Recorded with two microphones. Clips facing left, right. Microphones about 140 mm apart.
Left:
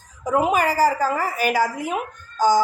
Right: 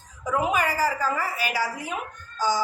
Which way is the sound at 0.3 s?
40° left (ahead or behind).